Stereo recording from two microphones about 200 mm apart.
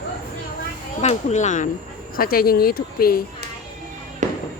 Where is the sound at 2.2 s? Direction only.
50° left (ahead or behind).